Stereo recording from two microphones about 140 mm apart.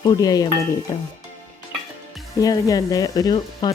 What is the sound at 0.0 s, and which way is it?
Speech, 30° left (ahead or behind).